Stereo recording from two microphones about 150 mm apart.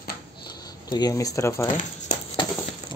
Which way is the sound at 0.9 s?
25° left (ahead or behind).